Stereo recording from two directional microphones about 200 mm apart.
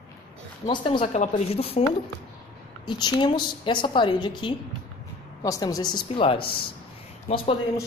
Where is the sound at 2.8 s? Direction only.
20° left (ahead or behind).